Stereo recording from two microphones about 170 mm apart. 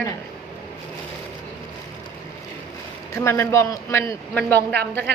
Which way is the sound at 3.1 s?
15° left (ahead or behind).